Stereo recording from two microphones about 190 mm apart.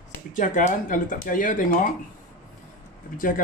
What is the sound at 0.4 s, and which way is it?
Speech, 40° left (ahead or behind).